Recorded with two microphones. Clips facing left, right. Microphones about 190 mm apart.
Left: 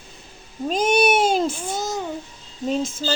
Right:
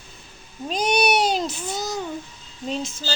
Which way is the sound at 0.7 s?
45° left (ahead or behind).